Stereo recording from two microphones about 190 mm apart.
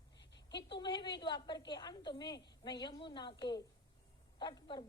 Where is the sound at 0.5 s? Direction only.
25° left (ahead or behind).